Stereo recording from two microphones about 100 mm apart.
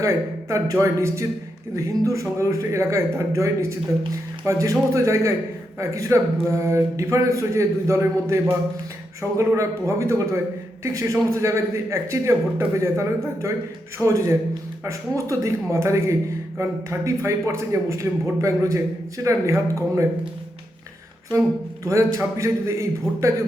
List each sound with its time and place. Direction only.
0.0 s a man's voice: 30° right (ahead or behind)
21.8 s a man's voice: 30° right (ahead or behind)